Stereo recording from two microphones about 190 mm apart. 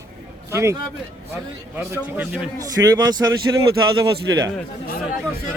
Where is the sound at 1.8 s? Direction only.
10° right (ahead or behind).